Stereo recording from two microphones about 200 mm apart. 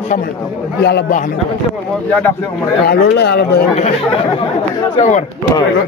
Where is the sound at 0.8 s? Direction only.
55° left (ahead or behind).